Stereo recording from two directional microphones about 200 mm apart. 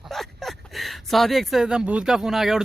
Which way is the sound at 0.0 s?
Centre (ahead or behind).